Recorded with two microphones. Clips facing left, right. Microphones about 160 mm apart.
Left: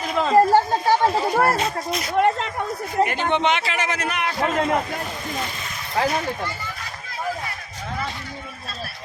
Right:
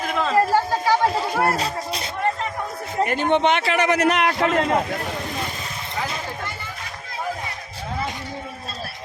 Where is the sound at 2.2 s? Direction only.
80° left.